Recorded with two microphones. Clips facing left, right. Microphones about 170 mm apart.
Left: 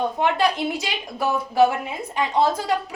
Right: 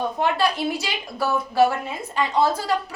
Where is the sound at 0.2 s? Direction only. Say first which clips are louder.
Even; 20° left (ahead or behind).